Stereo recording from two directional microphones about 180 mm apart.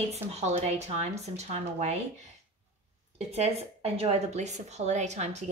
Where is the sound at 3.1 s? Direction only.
35° right (ahead or behind).